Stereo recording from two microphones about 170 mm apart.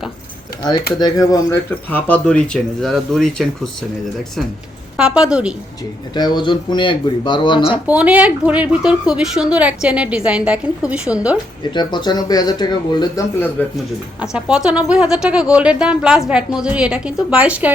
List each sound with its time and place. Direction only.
1.2 s speech: 20° left (ahead or behind)
1.9 s speech: 10° left (ahead or behind); by 5.5 s 5° right (ahead or behind)
6.1 s speech: 25° left (ahead or behind)
7.9 s speech: 10° right (ahead or behind)
11.7 s speech: 25° left (ahead or behind)
14.2 s speech: 5° right (ahead or behind)